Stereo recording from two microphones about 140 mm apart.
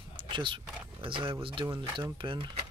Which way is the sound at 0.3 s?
35° right (ahead or behind).